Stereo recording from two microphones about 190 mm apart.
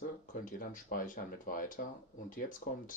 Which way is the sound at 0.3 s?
45° left (ahead or behind).